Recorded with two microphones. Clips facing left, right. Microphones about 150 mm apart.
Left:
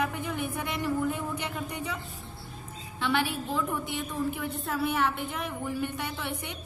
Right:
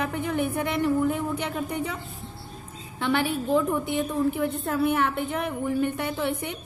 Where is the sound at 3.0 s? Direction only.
50° right (ahead or behind).